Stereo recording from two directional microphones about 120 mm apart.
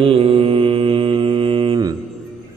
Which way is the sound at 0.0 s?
50° right (ahead or behind).